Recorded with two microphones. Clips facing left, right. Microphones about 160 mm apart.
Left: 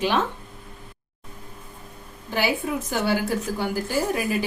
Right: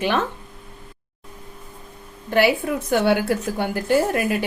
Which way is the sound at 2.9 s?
65° right (ahead or behind).